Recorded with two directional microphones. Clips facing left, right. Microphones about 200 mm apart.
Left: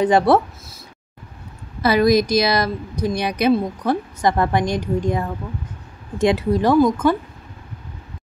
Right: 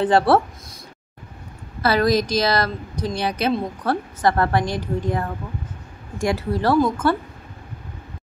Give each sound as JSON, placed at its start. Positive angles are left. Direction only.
{"t": 1.8, "sound": "a woman's voice", "side_deg": 15}